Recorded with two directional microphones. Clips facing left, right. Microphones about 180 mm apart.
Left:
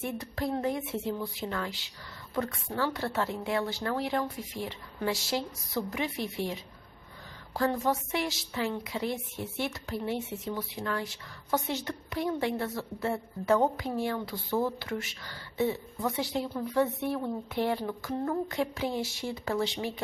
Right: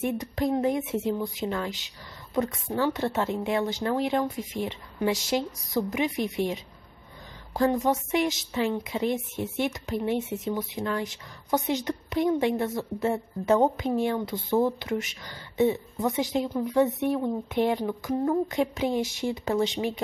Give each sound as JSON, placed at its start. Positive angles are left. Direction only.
{"t": 0.0, "sound": "a woman's voice", "side_deg": -20}